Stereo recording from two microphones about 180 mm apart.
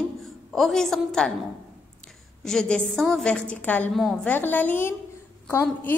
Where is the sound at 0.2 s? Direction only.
Centre (ahead or behind).